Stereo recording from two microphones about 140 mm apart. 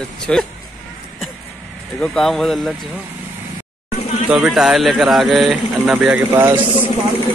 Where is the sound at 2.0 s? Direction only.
5° left (ahead or behind).